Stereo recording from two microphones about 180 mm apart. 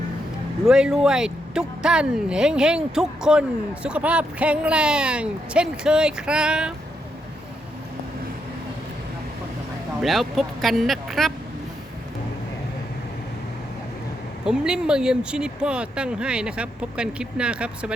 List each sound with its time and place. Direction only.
0.6 s speech: 5° right (ahead or behind)
10.0 s speech: centre (ahead or behind)
14.4 s speech: 5° right (ahead or behind)